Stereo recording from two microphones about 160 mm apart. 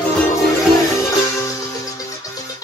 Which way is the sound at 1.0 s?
20° left (ahead or behind).